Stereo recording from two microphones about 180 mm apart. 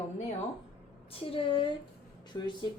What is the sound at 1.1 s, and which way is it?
Speech, 30° left (ahead or behind).